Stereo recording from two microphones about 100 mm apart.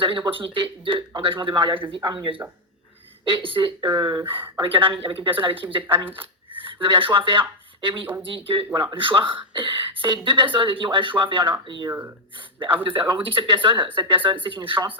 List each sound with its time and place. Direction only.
0.0 s speech: 60° right (ahead or behind); by 4.2 s 40° right (ahead or behind)
4.7 s speech: 60° right (ahead or behind)
8.7 s speech: 45° right (ahead or behind)
9.0 s speech: 60° right (ahead or behind)
11.9 s speech: 25° right (ahead or behind)
12.8 s speech: 55° right (ahead or behind)